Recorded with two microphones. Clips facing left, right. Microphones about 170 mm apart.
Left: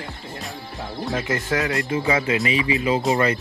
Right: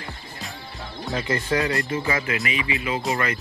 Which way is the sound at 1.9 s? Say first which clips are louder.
Left 4 dB; 20° left (ahead or behind).